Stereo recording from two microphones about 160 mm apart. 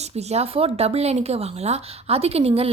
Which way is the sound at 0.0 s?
40° right (ahead or behind).